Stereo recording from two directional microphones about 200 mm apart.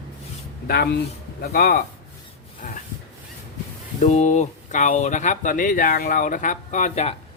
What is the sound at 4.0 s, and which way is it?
Speech, 35° left (ahead or behind).